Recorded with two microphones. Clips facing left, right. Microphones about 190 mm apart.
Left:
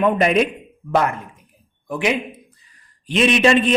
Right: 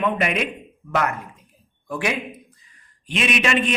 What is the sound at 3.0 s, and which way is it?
Speech, 35° left (ahead or behind).